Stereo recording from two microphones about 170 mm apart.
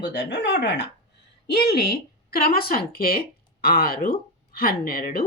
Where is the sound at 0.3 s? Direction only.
90° left.